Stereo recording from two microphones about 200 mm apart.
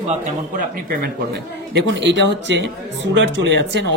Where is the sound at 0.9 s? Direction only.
50° right (ahead or behind).